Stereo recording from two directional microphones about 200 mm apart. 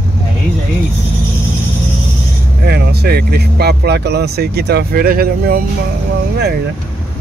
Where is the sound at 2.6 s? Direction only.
55° right (ahead or behind).